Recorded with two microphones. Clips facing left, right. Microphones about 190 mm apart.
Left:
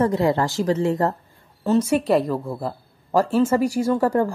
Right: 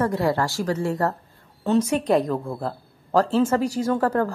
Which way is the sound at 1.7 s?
10° left (ahead or behind).